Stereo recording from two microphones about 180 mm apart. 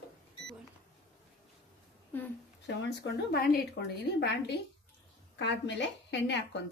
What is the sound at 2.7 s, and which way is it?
A woman's voice, 70° left (ahead or behind).